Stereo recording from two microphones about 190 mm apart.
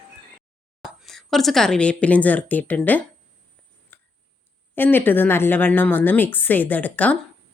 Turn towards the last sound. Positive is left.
turn(degrees=10)  # may be behind; listen again after turning